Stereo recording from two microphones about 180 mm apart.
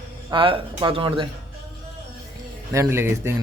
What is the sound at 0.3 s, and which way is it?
Speech, 30° right (ahead or behind).